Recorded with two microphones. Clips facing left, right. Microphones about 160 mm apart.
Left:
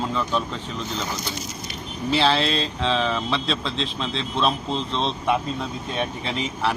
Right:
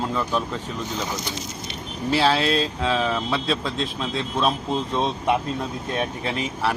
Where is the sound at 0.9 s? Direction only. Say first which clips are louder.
Even; 15° right (ahead or behind).